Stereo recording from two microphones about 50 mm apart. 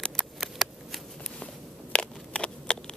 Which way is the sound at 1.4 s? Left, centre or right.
Left.